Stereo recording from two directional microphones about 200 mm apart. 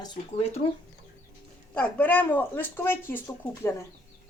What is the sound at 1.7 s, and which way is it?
Speech, 10° left (ahead or behind).